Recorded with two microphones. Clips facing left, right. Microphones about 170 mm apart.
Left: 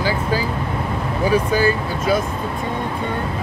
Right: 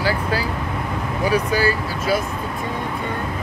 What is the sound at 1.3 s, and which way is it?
Speech, 25° left (ahead or behind).